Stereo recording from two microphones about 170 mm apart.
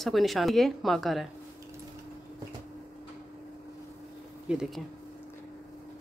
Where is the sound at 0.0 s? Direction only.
Centre (ahead or behind).